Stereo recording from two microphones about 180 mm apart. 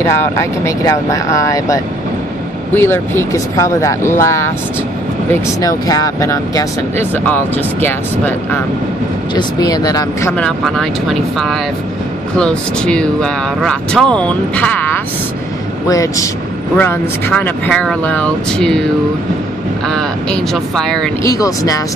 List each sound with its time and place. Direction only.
0.0 s speech: 15° left (ahead or behind)
9.3 s speech: 20° left (ahead or behind)
10.3 s speech: 5° left (ahead or behind)
15.9 s speech: 20° left (ahead or behind)
19.9 s speech: 5° left (ahead or behind)
21.2 s speech: 20° left (ahead or behind)